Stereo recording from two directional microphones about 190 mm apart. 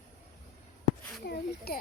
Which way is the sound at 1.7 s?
55° left (ahead or behind).